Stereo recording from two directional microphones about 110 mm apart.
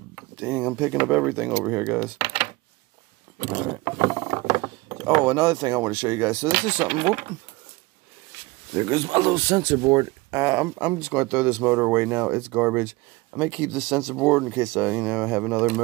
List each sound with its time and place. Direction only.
0.4 s speech: 10° right (ahead or behind)
3.4 s speech: 25° right (ahead or behind)
4.0 s mechanisms: 75° right (ahead or behind)
5.2 s speech: 30° right (ahead or behind)
8.7 s speech: 40° right (ahead or behind)
9.3 s speech: 30° right (ahead or behind)
10.4 s speech: 20° right (ahead or behind)